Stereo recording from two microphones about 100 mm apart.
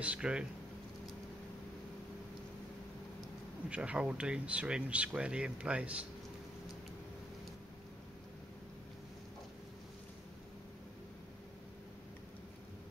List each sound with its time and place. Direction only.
0.0 s speech: 10° right (ahead or behind)
3.7 s speech: 10° right (ahead or behind)